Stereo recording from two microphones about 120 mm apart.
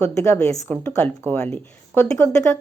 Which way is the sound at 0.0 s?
25° left (ahead or behind).